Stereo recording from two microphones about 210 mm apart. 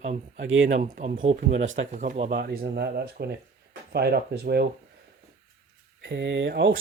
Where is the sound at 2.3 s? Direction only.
45° right (ahead or behind).